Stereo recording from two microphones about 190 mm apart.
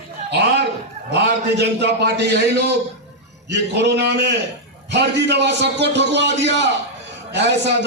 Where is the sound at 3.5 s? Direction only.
60° right (ahead or behind).